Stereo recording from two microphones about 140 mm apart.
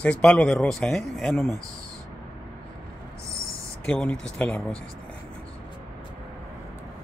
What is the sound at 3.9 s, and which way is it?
Speech, 5° left (ahead or behind).